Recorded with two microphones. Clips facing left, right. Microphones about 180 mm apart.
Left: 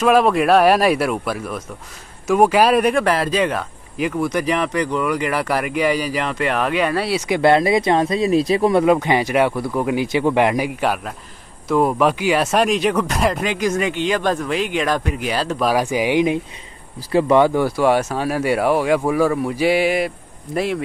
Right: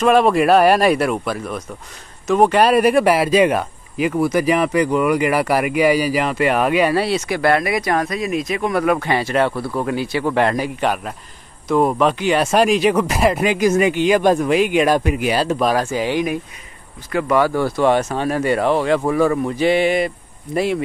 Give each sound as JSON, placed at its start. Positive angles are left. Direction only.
{"t": 0.0, "sound": "speech", "side_deg": 0}
{"t": 7.2, "sound": "speech", "side_deg": 20}
{"t": 15.7, "sound": "speech", "side_deg": 15}